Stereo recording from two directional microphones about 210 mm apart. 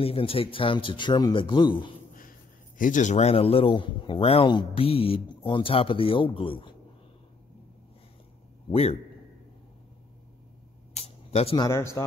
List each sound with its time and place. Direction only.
0.0 s speech: 25° left (ahead or behind)
2.8 s speech: 35° left (ahead or behind)
11.0 s speech: 30° left (ahead or behind)